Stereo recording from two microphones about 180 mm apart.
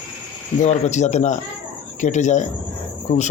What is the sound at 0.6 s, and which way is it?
Speech, 40° left (ahead or behind).